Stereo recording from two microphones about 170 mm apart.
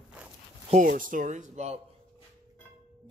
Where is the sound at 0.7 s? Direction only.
50° right (ahead or behind).